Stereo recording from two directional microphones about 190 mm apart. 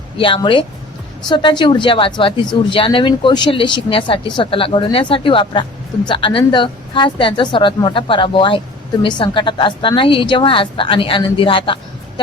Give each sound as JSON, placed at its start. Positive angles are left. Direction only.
{"t": 0.2, "sound": "a woman's voice", "side_deg": 25}